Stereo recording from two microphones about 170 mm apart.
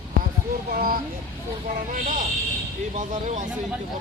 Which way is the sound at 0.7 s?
60° right (ahead or behind).